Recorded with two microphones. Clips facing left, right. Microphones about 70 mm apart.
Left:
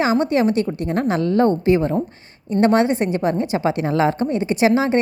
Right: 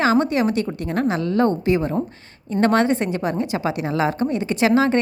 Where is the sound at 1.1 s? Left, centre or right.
Left.